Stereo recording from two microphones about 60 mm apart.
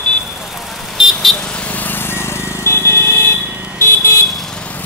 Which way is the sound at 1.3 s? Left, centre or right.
Centre.